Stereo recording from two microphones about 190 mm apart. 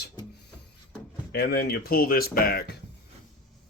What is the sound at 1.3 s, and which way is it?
Speech, 55° left (ahead or behind).